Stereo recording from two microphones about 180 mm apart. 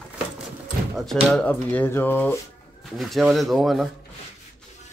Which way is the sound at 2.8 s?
Centre (ahead or behind).